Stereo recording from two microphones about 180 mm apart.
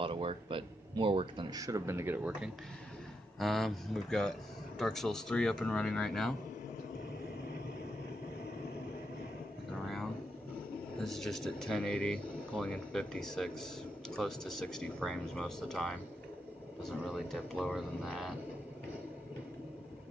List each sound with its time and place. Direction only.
0.0 s speech: 30° right (ahead or behind); by 2.5 s 10° right (ahead or behind)
3.3 s a man's voice: centre (ahead or behind)
11.0 s a man's voice: centre (ahead or behind)